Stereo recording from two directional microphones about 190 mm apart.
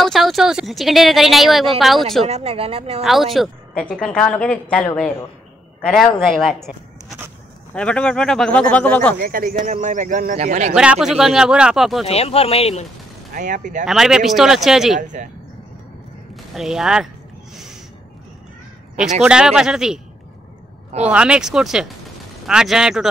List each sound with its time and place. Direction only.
0.0 s a woman's voice: centre (ahead or behind)
2.2 s speech: 35° right (ahead or behind)
3.0 s a woman's voice: centre (ahead or behind)
9.2 s speech: 50° right (ahead or behind)
10.7 s a woman's voice: 5° right (ahead or behind)
12.1 s speech: 30° left (ahead or behind)
13.3 s speech: 40° right (ahead or behind)
13.8 s a woman's voice: 5° right (ahead or behind)
16.5 s a woman's voice: centre (ahead or behind)
19.2 s a woman's voice: 5° right (ahead or behind)
21.1 s a woman's voice: 5° right (ahead or behind)